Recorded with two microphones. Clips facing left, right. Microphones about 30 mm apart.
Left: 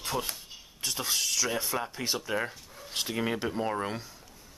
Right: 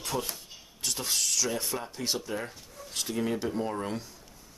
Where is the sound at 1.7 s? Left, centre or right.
Left.